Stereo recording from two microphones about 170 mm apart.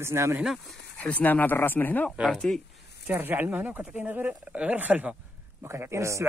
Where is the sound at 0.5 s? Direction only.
5° left (ahead or behind).